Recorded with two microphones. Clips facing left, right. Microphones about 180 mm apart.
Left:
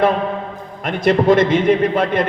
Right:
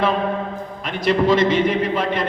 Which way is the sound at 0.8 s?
55° left (ahead or behind).